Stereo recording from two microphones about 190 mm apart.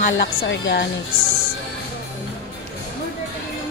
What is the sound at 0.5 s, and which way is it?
Speech, 65° left (ahead or behind).